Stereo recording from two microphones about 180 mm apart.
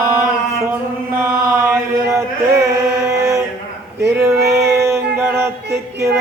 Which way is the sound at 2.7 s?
15° right (ahead or behind).